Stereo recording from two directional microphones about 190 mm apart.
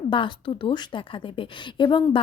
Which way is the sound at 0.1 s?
25° left (ahead or behind).